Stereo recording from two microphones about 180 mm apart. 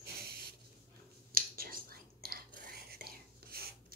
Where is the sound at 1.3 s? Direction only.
55° right (ahead or behind).